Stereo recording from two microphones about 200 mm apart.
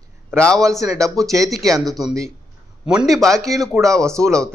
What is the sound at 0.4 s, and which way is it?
Speech, 5° left (ahead or behind).